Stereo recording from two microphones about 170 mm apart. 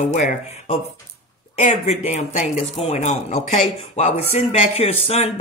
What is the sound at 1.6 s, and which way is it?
Speech, 40° left (ahead or behind).